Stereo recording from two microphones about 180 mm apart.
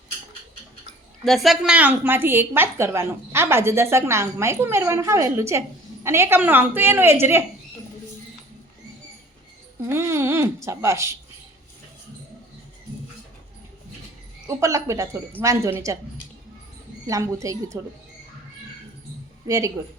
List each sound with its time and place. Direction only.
1.2 s a woman's voice: centre (ahead or behind)
9.8 s a woman's voice: 15° right (ahead or behind)
14.4 s a woman's voice: 15° right (ahead or behind)
17.1 s a woman's voice: 20° right (ahead or behind)
19.5 s speech: 20° right (ahead or behind)